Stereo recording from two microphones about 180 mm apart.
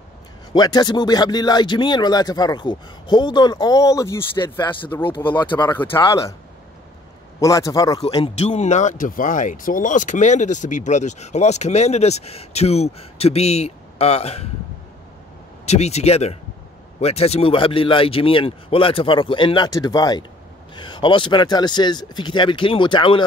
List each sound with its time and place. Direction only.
0.5 s speech: 25° left (ahead or behind)
5.7 s a man's voice: 10° left (ahead or behind)
5.9 s speech: 25° left (ahead or behind)
7.3 s a man's voice: 20° left (ahead or behind)
8.4 s speech: 40° left (ahead or behind)
15.6 s speech: 35° left (ahead or behind)